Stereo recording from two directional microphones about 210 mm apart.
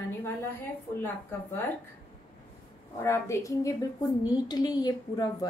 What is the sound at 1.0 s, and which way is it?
Speech, 10° left (ahead or behind).